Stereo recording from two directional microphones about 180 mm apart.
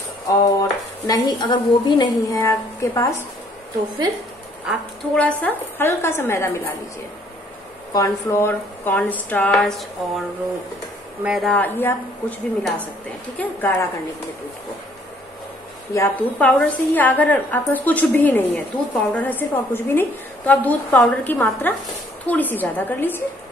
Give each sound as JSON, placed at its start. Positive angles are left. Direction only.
{"t": 0.3, "sound": "speech", "side_deg": 20}
{"t": 5.1, "sound": "a woman's voice", "side_deg": 10}
{"t": 7.9, "sound": "a woman's voice", "side_deg": 15}
{"t": 11.2, "sound": "a woman's voice", "side_deg": 0}
{"t": 15.9, "sound": "a woman's voice", "side_deg": 10}